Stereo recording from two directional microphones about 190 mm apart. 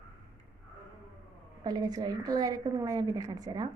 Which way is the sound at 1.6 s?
20° right (ahead or behind).